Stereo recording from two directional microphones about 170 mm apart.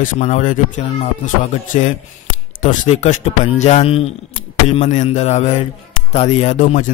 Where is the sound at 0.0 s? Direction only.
45° left (ahead or behind).